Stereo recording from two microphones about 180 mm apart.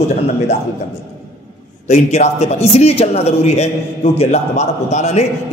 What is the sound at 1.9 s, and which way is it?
A man's voice, 40° left (ahead or behind).